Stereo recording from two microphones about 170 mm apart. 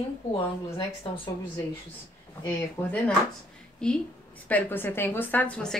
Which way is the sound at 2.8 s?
15° left (ahead or behind).